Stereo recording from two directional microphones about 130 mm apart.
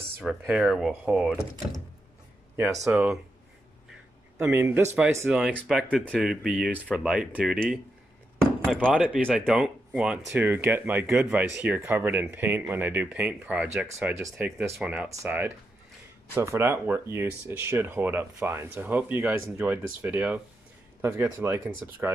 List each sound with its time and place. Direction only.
0.2 s speech: 5° right (ahead or behind)
2.9 s speech: 5° right (ahead or behind)
4.4 s speech: 15° right (ahead or behind)
8.9 s speech: 5° right (ahead or behind)
13.9 s speech: 20° right (ahead or behind)